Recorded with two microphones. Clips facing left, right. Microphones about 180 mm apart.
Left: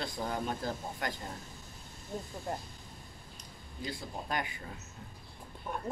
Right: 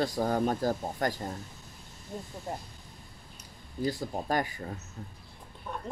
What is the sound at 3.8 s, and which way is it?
Speech, 45° right (ahead or behind).